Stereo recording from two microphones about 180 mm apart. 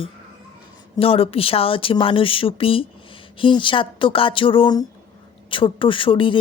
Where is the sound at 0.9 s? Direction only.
30° left (ahead or behind).